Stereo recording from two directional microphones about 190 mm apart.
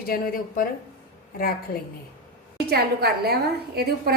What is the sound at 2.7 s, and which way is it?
Speech, 55° right (ahead or behind).